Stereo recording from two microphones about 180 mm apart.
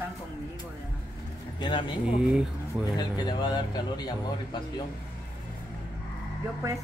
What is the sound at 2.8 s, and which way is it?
Speech, 25° left (ahead or behind).